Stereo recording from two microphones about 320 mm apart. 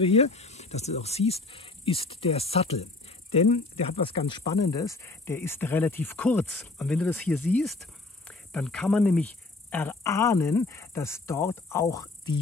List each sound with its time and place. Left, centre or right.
0.0 s a woman's voice: centre